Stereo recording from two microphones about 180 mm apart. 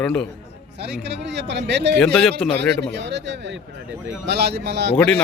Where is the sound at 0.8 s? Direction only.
70° right (ahead or behind).